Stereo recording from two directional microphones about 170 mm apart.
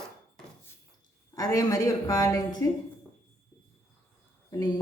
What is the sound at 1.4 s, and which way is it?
A woman's voice, 20° left (ahead or behind).